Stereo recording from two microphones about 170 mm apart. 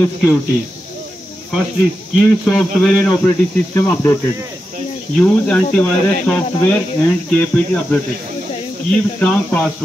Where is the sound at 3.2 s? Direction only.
15° left (ahead or behind).